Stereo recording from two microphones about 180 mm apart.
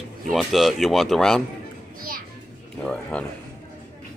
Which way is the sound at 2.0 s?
50° right (ahead or behind).